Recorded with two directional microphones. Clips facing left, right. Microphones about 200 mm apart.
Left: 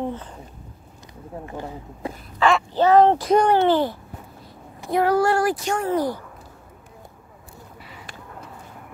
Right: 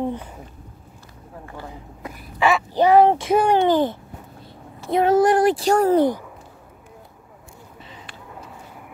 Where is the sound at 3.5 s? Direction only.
15° right (ahead or behind).